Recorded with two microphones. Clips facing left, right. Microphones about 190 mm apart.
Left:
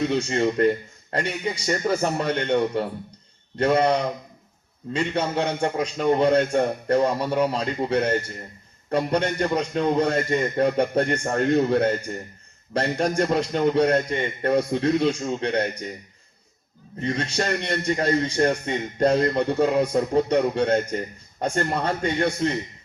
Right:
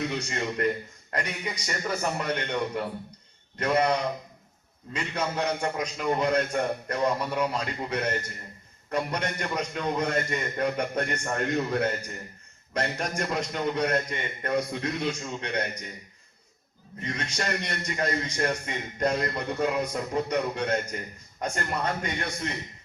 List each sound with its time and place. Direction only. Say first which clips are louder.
0.1 s a man's voice: left 9 dB; 30° left (ahead or behind)
4.9 s a man's voice: left 6 dB; 30° left (ahead or behind)
17.0 s a man's voice: left 7 dB; 30° left (ahead or behind)